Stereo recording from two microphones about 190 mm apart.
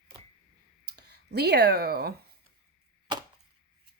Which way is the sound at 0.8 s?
60° right (ahead or behind).